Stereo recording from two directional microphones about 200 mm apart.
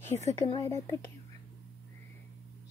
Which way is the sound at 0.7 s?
15° left (ahead or behind).